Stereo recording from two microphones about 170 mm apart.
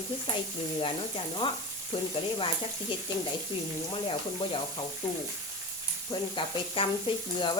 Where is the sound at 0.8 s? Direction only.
30° left (ahead or behind).